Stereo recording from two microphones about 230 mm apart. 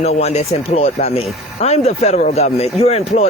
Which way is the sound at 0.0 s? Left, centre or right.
Left.